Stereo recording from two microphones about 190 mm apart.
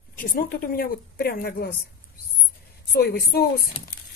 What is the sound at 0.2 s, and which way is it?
A woman's voice, 50° left (ahead or behind).